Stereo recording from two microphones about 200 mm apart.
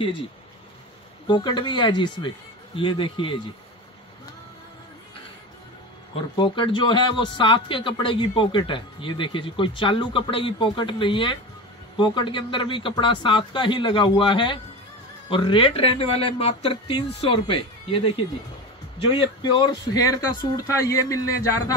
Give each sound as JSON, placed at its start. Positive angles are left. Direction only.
{"t": 1.2, "sound": "a man's voice", "side_deg": 25}
{"t": 6.1, "sound": "a man's voice", "side_deg": 25}